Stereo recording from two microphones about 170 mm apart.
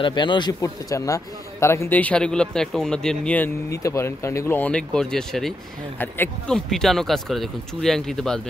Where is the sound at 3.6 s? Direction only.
20° left (ahead or behind).